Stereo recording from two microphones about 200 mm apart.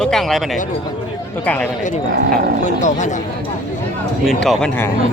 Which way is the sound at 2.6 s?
35° left (ahead or behind).